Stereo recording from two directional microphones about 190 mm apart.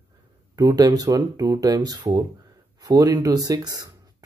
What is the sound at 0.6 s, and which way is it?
Speech, 20° right (ahead or behind).